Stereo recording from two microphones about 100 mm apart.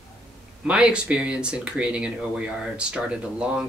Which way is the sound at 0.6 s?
10° right (ahead or behind).